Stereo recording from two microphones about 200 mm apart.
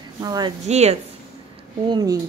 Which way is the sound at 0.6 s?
35° right (ahead or behind).